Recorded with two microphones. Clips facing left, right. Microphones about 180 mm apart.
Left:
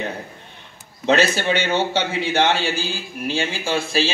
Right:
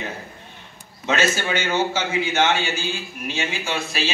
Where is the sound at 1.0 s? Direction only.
35° left (ahead or behind).